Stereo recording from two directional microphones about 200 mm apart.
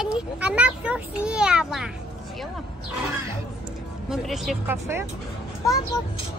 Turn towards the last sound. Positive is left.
turn(degrees=15)  # may be behind; listen again after turning